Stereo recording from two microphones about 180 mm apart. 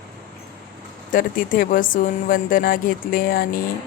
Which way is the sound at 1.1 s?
50° left (ahead or behind).